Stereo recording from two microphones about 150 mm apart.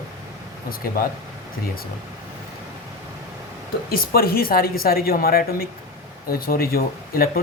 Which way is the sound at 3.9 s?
80° left.